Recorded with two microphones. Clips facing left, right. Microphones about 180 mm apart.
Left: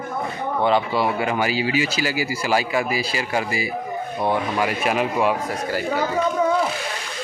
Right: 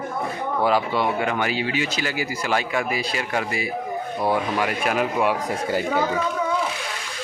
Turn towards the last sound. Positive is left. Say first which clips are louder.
# left 1 dB
turn(degrees=0)  # may be behind; listen again after turning